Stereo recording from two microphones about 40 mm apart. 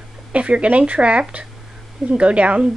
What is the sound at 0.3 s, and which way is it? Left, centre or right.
Speech, right.